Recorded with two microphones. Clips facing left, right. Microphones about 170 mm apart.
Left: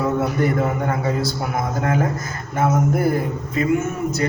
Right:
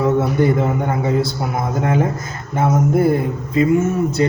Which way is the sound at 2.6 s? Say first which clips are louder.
Right 3 dB; 25° right (ahead or behind).